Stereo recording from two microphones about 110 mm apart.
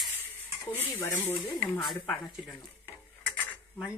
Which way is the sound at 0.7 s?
20° left (ahead or behind).